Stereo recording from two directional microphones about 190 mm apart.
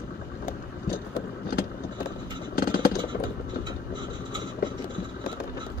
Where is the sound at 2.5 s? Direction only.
50° left (ahead or behind).